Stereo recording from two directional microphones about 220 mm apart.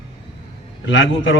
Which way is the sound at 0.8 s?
60° left (ahead or behind).